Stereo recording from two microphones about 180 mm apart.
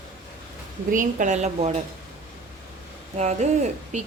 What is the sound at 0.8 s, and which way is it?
Speech, 45° right (ahead or behind).